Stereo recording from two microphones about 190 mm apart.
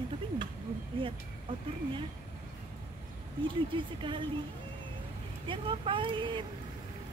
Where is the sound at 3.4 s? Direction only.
25° right (ahead or behind).